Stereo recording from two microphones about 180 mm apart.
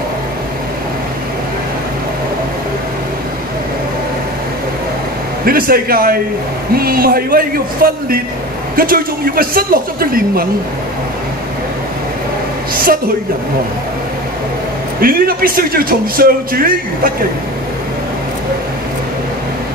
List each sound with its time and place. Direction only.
5.4 s a man's voice: 55° right (ahead or behind)
15.0 s a man's voice: 55° right (ahead or behind)